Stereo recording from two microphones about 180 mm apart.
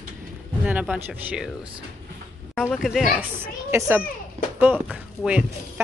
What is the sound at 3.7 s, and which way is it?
A woman's voice, 15° right (ahead or behind).